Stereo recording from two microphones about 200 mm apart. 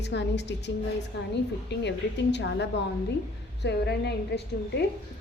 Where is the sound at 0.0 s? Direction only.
60° left (ahead or behind).